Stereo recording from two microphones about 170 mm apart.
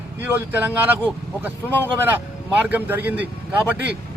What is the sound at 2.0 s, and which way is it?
Speech, 10° right (ahead or behind).